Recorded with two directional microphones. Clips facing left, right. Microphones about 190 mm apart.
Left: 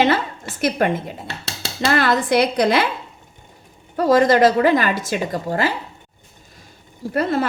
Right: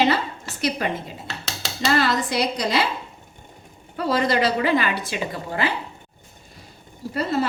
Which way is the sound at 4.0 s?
45° left (ahead or behind).